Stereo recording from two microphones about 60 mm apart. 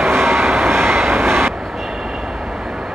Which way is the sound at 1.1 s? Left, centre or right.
Right.